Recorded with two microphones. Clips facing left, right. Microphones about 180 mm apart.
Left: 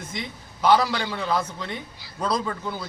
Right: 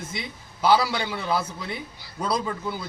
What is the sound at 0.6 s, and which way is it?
A man's voice, 5° right (ahead or behind).